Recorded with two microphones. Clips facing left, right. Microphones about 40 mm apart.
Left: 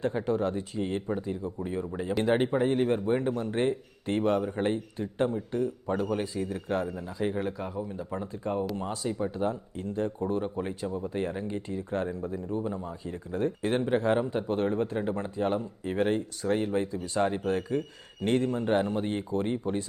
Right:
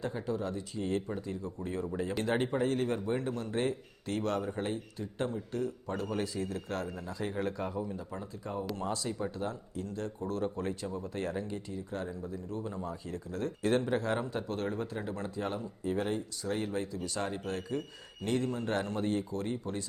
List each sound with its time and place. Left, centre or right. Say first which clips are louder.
0.0 s speech: left 7 dB; left
0.8 s speech: left 1 dB; left
4.6 s speech: left 7 dB; left; by 7.9 s centre
8.1 s speech: left 7 dB; left
8.7 s speech: left 3 dB; centre
9.4 s speech: left 6 dB; left
11.7 s speech: left 7 dB; left
12.5 s speech: left 4 dB; centre